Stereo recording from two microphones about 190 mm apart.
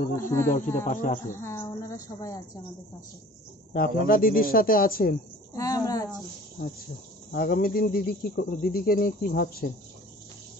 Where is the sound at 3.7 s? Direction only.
50° left (ahead or behind).